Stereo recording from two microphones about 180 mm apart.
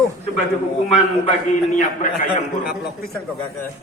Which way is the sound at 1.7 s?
45° left (ahead or behind).